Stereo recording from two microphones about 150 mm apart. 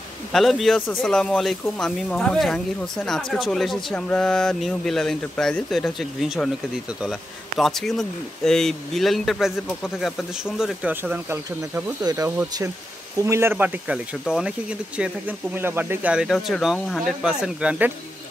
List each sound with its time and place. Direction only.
0.3 s speech: centre (ahead or behind); by 11.8 s 15° right (ahead or behind)
12.0 s speech: 25° right (ahead or behind); by 17.9 s 10° right (ahead or behind)